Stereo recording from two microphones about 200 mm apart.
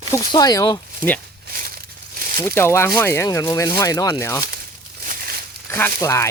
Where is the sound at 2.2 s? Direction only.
45° right (ahead or behind).